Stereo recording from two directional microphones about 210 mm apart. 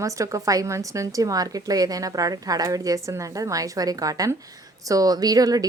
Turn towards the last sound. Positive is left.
turn(degrees=-15)  # may be behind; listen again after turning